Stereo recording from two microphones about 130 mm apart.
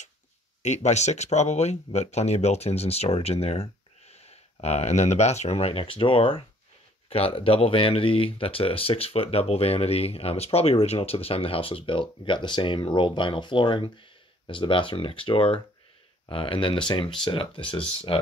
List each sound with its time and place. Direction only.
0.6 s speech: 60° left (ahead or behind); by 18.2 s 40° left (ahead or behind)